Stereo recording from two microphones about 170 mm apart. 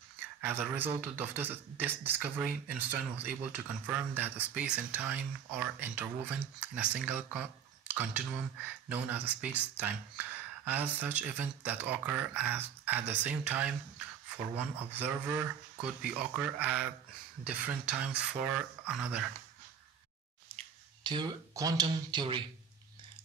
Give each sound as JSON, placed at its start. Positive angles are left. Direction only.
{"t": 0.4, "sound": "speech", "side_deg": -10}
{"t": 20.5, "sound": "speech", "side_deg": -30}